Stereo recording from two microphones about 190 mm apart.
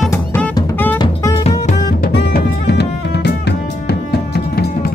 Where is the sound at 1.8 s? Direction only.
60° left (ahead or behind).